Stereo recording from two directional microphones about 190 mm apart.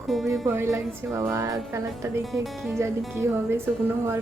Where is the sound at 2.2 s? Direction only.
Centre (ahead or behind).